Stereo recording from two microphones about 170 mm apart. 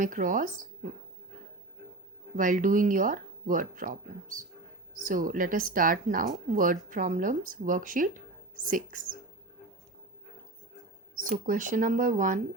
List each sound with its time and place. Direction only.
0.0 s speech: 50° right (ahead or behind)
2.3 s speech: 50° right (ahead or behind)
11.1 s speech: 50° right (ahead or behind)